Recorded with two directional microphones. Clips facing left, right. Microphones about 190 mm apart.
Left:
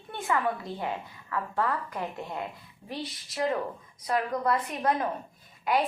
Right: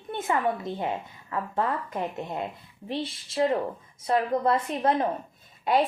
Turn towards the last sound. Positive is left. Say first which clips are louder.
# right 3 dB
turn(degrees=-25)  # may be behind; listen again after turning